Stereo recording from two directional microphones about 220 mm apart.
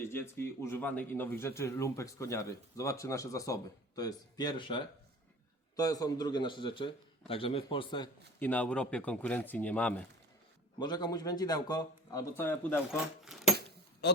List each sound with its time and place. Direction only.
0.1 s a man's voice: 10° left (ahead or behind)
8.4 s speech: 5° left (ahead or behind)
10.8 s speech: 20° left (ahead or behind)
12.9 s speech: centre (ahead or behind)